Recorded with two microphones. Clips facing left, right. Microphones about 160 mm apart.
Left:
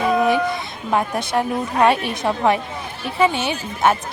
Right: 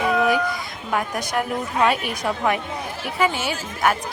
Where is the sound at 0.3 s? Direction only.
25° left (ahead or behind).